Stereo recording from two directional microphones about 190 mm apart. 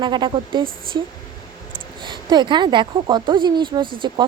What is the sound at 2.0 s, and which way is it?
Speech, 25° right (ahead or behind).